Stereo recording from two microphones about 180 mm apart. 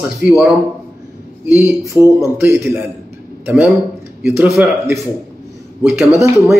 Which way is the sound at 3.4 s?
10° right (ahead or behind).